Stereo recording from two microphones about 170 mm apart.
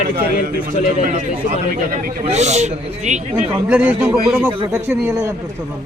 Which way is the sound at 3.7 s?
10° right (ahead or behind).